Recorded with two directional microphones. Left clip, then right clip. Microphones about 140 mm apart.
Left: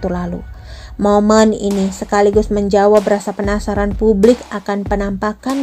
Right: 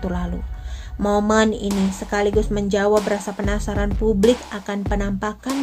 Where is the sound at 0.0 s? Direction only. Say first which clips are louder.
Left 7 dB; 40° left (ahead or behind).